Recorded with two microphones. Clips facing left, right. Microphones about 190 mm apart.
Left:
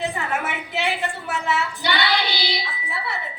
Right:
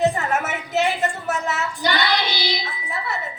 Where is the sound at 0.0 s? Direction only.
45° right (ahead or behind).